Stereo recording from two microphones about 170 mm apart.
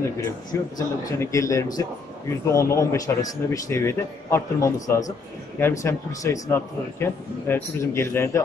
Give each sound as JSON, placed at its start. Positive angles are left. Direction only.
{"t": 0.5, "sound": "a man's voice", "side_deg": 20}